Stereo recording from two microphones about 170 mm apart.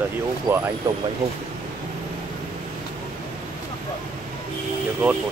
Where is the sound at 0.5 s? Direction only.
15° right (ahead or behind).